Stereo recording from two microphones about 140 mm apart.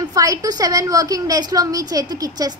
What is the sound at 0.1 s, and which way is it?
A woman's voice, 25° right (ahead or behind).